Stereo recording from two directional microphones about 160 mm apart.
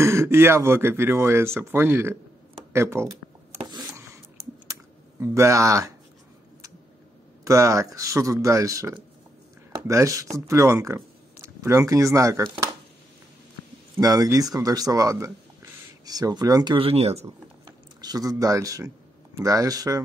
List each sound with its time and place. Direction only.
0.0 s speech: 15° right (ahead or behind)
3.7 s a sound: 20° right (ahead or behind)
4.4 s typing: 35° right (ahead or behind)
5.2 s speech: 20° right (ahead or behind)
7.4 s speech: 20° right (ahead or behind)
13.9 s speech: 25° right (ahead or behind); by 17.3 s 40° right (ahead or behind)
17.6 s speech: 25° right (ahead or behind)